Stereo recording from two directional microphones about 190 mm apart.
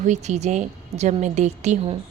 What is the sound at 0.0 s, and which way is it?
A woman's voice, 35° right (ahead or behind).